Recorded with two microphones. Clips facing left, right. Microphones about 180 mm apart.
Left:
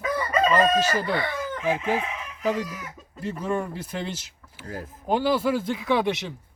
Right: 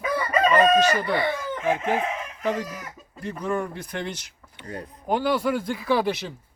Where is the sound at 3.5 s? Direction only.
5° left (ahead or behind).